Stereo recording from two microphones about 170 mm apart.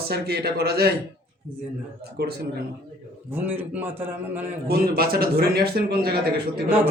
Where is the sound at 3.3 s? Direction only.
10° right (ahead or behind).